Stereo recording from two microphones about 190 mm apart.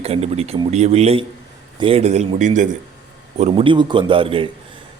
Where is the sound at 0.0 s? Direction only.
35° right (ahead or behind).